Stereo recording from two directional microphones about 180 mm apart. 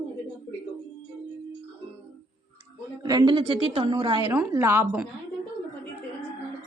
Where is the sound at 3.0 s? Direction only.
20° right (ahead or behind).